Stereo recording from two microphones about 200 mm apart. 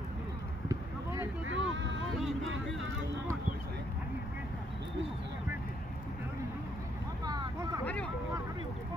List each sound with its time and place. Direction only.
0.7 s a sound: 15° right (ahead or behind)
1.5 s boat: 65° right (ahead or behind)
2.4 s vehicle: 70° right (ahead or behind)
7.2 s vehicle: 20° right (ahead or behind)
7.8 s vehicle: 5° left (ahead or behind)